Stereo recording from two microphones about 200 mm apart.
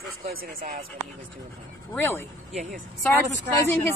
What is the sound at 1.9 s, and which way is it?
Speech, 10° left (ahead or behind).